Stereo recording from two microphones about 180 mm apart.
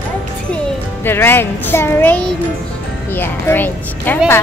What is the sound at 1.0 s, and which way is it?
A woman's voice, 10° left (ahead or behind).